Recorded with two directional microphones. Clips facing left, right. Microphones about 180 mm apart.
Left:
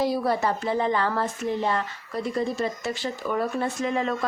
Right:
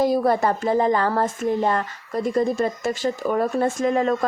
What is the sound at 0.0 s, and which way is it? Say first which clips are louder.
A woman's voice: right 5 dB; 50° right (ahead or behind).